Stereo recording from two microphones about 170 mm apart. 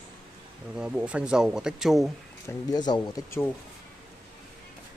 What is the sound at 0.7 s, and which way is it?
Speech, 5° right (ahead or behind).